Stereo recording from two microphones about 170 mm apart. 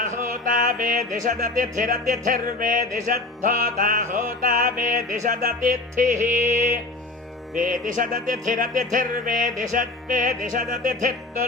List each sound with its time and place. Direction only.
0.4 s music: 55° right (ahead or behind)